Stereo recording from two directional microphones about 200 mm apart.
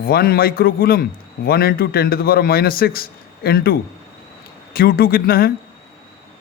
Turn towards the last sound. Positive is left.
turn(degrees=50)  # may be behind; listen again after turning